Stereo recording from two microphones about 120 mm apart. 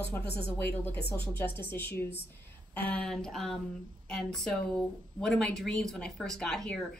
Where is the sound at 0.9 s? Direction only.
15° left (ahead or behind).